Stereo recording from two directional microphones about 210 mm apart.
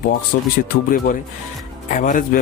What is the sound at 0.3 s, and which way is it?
Speech, 50° left (ahead or behind).